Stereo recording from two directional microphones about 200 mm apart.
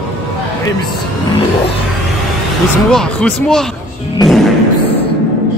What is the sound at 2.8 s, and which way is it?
Speech, 5° left (ahead or behind).